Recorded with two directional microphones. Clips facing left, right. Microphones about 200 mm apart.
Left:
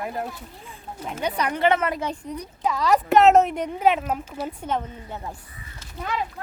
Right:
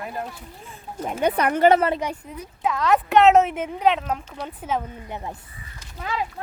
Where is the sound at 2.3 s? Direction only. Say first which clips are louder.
Even; centre (ahead or behind).